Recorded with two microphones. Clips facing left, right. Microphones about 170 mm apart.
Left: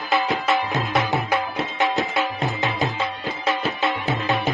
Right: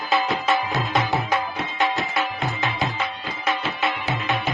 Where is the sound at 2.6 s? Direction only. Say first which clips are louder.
Left 1 dB; 20° left (ahead or behind).